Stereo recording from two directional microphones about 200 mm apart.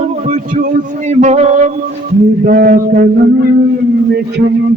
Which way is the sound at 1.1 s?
35° right (ahead or behind).